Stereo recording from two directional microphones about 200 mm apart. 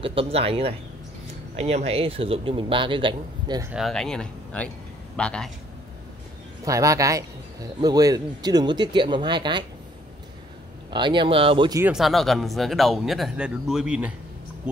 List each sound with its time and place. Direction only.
0.0 s a man's voice: 30° right (ahead or behind)
3.7 s speech: centre (ahead or behind)
6.6 s a man's voice: 15° right (ahead or behind)
10.9 s a man's voice: 25° right (ahead or behind)
11.8 s speech: centre (ahead or behind)